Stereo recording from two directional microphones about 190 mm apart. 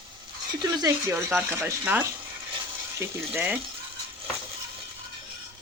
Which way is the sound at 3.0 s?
10° right (ahead or behind).